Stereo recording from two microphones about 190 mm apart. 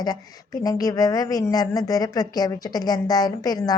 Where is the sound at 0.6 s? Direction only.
20° left (ahead or behind).